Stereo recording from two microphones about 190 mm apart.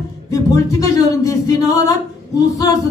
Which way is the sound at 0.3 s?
15° left (ahead or behind).